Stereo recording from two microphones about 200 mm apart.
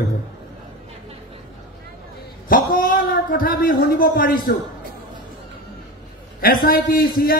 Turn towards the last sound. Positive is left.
turn(degrees=45)  # may be behind; listen again after turning